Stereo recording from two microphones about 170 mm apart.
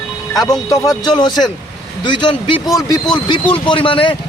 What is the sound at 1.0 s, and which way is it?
Speech, 25° left (ahead or behind).